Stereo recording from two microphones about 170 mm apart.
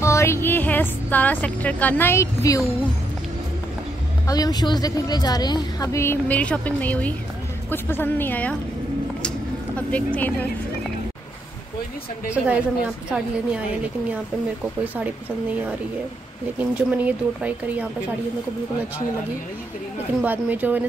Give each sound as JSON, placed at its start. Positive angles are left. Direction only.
{"t": 0.0, "sound": "speech", "side_deg": 15}
{"t": 4.3, "sound": "a woman's voice", "side_deg": 20}
{"t": 9.8, "sound": "a woman's voice", "side_deg": 10}
{"t": 12.3, "sound": "a woman's voice", "side_deg": -5}
{"t": 16.5, "sound": "speech", "side_deg": -10}
{"t": 20.2, "sound": "speech", "side_deg": -10}